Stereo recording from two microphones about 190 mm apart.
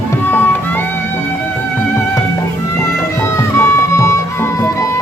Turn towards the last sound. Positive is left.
turn(degrees=15)  # may be behind; listen again after turning